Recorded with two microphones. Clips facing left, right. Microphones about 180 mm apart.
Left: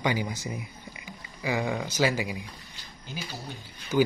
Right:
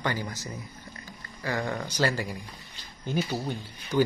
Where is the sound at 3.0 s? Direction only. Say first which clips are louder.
Right 10 dB; 55° right (ahead or behind).